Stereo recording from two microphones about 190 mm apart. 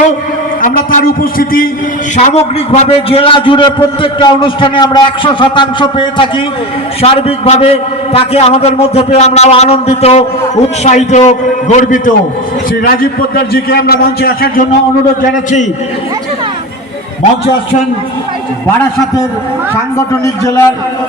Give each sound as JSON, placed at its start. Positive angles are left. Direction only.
{"t": 0.6, "sound": "a man's voice", "side_deg": 45}
{"t": 2.1, "sound": "a man's voice", "side_deg": 35}
{"t": 20.2, "sound": "a man's voice", "side_deg": 15}